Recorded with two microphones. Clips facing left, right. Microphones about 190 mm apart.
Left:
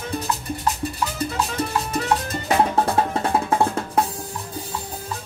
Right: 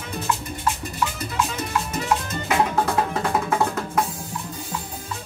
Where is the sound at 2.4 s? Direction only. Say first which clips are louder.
Left 2 dB; 35° left (ahead or behind).